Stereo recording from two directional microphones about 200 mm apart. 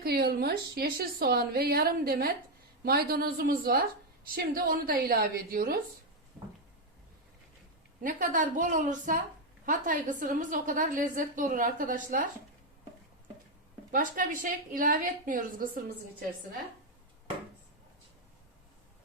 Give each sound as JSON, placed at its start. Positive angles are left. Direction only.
{"t": 0.0, "sound": "a woman's voice", "side_deg": -50}
{"t": 8.0, "sound": "a woman's voice", "side_deg": -40}
{"t": 13.9, "sound": "a woman's voice", "side_deg": -40}